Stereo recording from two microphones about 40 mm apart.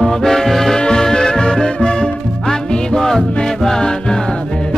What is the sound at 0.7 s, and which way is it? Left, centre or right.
Music, centre.